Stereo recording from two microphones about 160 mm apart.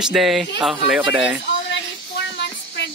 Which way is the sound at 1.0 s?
30° right (ahead or behind).